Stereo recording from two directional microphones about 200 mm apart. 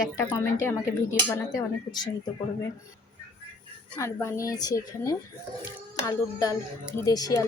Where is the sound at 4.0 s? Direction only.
15° left (ahead or behind).